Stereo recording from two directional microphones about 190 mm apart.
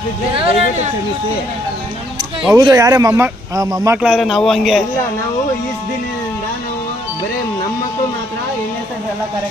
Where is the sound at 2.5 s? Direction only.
20° right (ahead or behind).